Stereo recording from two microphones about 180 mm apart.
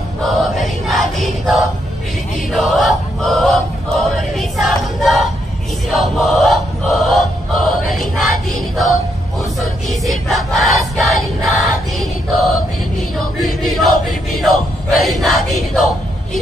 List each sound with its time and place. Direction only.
0.2 s chant: centre (ahead or behind)
2.5 s choir: centre (ahead or behind)
5.9 s choir: centre (ahead or behind)
13.4 s chant: centre (ahead or behind)